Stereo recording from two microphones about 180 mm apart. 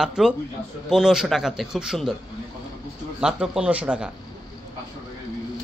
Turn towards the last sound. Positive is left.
turn(degrees=-5)  # may be behind; listen again after turning